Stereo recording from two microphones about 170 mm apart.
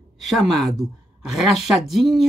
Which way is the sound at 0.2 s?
Centre (ahead or behind).